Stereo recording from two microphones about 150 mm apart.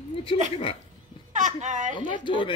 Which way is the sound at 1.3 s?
55° right (ahead or behind).